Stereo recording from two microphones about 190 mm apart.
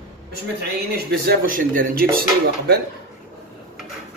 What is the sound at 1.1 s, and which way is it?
A man's voice, 50° right (ahead or behind).